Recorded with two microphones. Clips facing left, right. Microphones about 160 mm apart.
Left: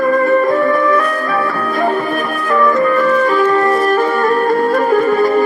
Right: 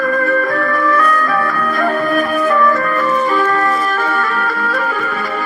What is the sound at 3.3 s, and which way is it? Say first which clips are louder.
Music: left 3 dB; 15° left (ahead or behind).